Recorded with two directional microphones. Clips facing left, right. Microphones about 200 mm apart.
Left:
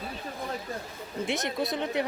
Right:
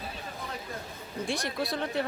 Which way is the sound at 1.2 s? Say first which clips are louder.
Left 2 dB; 20° left (ahead or behind).